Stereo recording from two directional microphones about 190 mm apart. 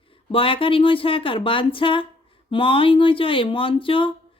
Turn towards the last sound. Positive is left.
turn(degrees=30)  # may be behind; listen again after turning